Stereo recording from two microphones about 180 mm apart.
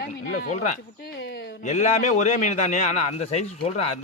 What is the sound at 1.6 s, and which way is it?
A man's voice, 40° left (ahead or behind).